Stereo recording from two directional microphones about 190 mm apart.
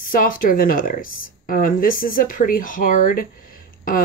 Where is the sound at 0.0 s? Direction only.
45° left (ahead or behind).